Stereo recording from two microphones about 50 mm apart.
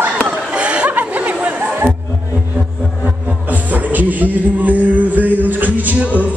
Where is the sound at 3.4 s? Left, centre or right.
Right.